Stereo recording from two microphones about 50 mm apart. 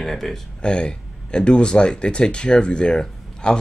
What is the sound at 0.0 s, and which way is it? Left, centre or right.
Speech, centre.